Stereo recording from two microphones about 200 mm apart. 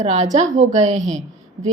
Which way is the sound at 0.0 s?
35° right (ahead or behind).